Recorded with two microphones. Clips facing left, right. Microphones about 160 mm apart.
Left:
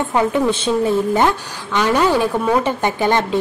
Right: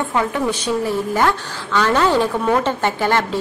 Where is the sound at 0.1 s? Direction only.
25° left (ahead or behind).